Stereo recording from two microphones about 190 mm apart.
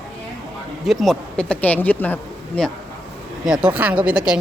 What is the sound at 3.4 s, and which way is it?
Speech, 5° right (ahead or behind).